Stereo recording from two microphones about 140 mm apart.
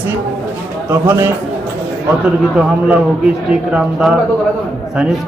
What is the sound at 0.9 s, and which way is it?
Speech, 20° right (ahead or behind).